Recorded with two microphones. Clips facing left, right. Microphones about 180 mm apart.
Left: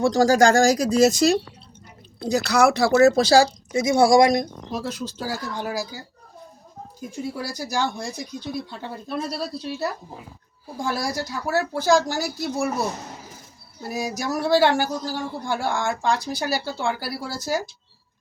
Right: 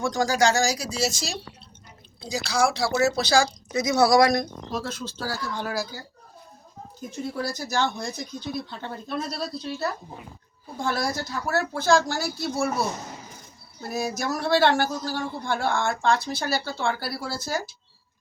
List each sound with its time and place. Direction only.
0.0 s speech: 35° left (ahead or behind); by 6.0 s 15° left (ahead or behind)
7.2 s speech: 10° left (ahead or behind)
13.8 s speech: 15° left (ahead or behind)